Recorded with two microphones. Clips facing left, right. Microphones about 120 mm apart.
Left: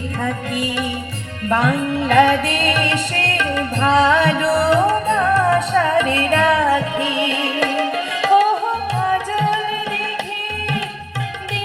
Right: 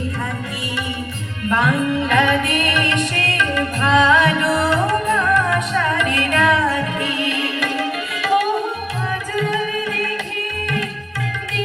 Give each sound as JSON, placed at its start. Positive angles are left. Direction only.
{"t": 1.5, "sound": "music", "side_deg": 40}